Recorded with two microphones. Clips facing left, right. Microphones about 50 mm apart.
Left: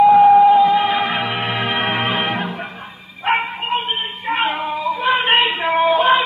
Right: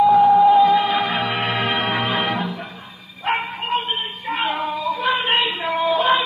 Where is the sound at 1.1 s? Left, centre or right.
Centre.